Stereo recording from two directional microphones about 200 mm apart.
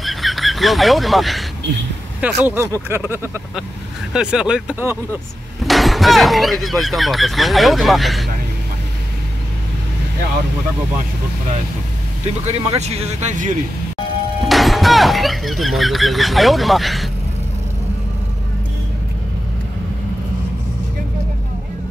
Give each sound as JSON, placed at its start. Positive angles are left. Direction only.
{"t": 0.0, "sound": "a sound", "side_deg": 0}
{"t": 2.2, "sound": "speech", "side_deg": -10}
{"t": 12.4, "sound": "speech", "side_deg": -30}
{"t": 14.4, "sound": "speech", "side_deg": 0}